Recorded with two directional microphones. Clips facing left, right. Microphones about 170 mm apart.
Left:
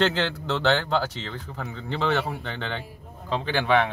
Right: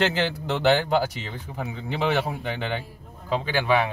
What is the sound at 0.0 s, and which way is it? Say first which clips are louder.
Speech: even; 10° right (ahead or behind).